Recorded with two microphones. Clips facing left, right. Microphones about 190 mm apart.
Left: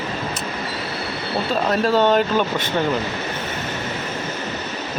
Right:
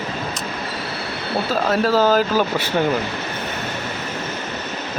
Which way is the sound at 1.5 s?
Centre (ahead or behind).